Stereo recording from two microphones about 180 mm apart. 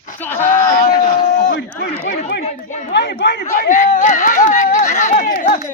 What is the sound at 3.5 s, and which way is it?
Speech, 45° left (ahead or behind).